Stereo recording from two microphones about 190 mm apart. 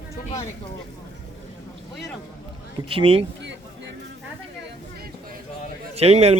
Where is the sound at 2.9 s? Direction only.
30° right (ahead or behind).